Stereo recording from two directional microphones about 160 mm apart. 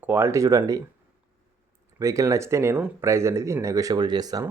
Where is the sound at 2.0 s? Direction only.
20° right (ahead or behind).